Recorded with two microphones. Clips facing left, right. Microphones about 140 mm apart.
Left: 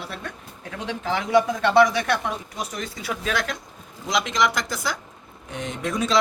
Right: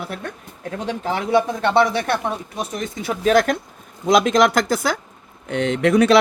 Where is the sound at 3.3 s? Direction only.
45° right (ahead or behind).